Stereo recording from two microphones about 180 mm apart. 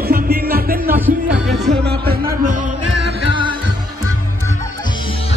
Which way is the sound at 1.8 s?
55° right (ahead or behind).